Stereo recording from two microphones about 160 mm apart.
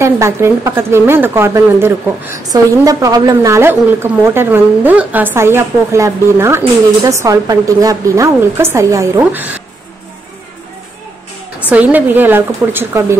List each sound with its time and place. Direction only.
0.0 s a woman's voice: 15° right (ahead or behind)
11.7 s a woman's voice: 10° right (ahead or behind)